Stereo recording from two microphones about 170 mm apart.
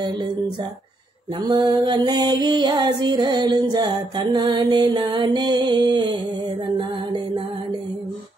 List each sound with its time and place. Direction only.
1.4 s music: 25° right (ahead or behind)